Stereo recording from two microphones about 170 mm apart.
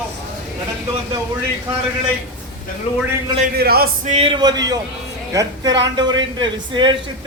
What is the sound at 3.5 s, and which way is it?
Speech, 65° right (ahead or behind).